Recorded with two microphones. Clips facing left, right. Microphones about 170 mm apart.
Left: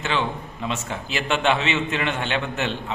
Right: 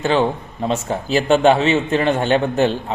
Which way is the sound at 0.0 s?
40° right (ahead or behind).